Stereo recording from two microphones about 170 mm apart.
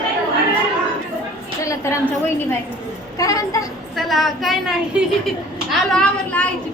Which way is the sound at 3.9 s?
Centre (ahead or behind).